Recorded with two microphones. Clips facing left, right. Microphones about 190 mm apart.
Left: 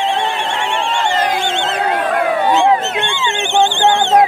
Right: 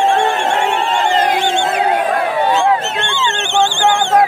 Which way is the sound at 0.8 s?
Centre (ahead or behind).